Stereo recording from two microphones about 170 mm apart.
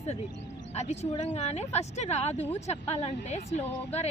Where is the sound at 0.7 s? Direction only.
40° left (ahead or behind).